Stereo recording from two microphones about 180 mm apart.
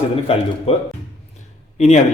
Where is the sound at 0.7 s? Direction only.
35° left (ahead or behind).